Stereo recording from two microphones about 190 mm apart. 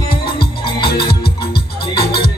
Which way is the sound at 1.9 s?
55° left (ahead or behind).